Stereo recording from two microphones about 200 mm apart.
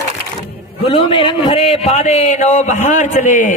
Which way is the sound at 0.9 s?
25° left (ahead or behind).